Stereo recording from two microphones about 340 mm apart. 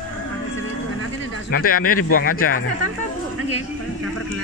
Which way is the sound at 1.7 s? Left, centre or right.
Left.